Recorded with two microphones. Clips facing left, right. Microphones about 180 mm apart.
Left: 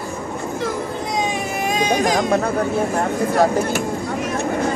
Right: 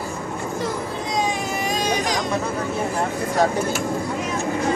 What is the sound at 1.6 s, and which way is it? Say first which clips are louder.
Baby cry: left 6 dB; 50° left (ahead or behind).